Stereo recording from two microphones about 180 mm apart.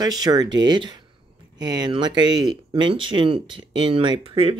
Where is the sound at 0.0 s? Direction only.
20° right (ahead or behind).